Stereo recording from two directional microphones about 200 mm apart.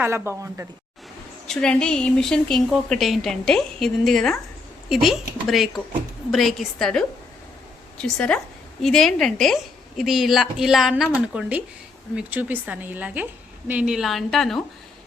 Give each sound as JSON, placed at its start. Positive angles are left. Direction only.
{"t": 0.0, "sound": "speech", "side_deg": -10}
{"t": 1.5, "sound": "a woman's voice", "side_deg": 5}
{"t": 8.0, "sound": "a woman's voice", "side_deg": 5}